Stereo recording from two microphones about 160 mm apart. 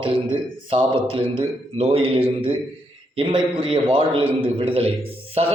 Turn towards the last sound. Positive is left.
turn(degrees=-40)  # may be behind; listen again after turning